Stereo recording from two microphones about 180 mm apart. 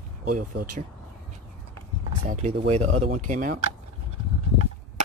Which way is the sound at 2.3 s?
40° right (ahead or behind).